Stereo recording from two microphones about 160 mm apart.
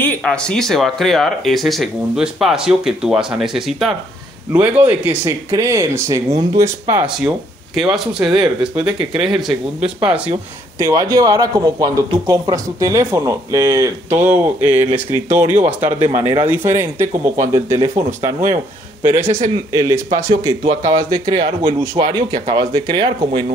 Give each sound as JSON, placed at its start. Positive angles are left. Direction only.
{"t": 0.0, "sound": "speech", "side_deg": 10}
{"t": 7.7, "sound": "speech", "side_deg": 0}
{"t": 10.8, "sound": "speech", "side_deg": -20}
{"t": 17.9, "sound": "speech", "side_deg": -50}
{"t": 19.0, "sound": "speech", "side_deg": -15}